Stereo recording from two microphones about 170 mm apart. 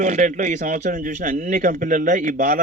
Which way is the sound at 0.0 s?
45° right (ahead or behind).